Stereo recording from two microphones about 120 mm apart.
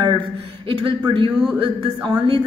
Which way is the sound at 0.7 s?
50° right (ahead or behind).